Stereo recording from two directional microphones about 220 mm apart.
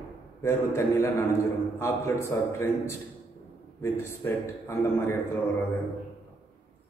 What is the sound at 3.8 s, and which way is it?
A man's voice, 10° left (ahead or behind).